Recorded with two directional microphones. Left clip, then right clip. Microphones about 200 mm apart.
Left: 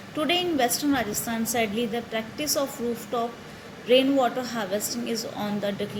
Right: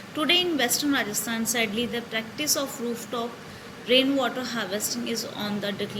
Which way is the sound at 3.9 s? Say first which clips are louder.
Left 2 dB; 35° left (ahead or behind).